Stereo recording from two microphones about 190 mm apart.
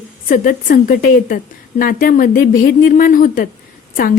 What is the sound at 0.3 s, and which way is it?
Speech, 45° left (ahead or behind).